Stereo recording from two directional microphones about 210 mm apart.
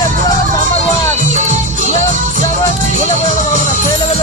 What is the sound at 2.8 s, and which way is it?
Music, 30° left (ahead or behind).